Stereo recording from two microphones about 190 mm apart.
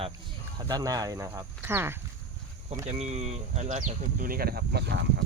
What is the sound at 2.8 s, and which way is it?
Speech, 35° right (ahead or behind).